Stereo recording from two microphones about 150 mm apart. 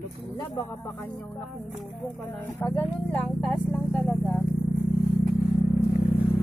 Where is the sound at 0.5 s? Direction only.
25° left (ahead or behind).